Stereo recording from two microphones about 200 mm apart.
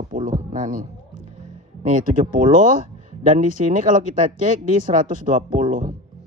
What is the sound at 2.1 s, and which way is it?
Speech, 40° right (ahead or behind).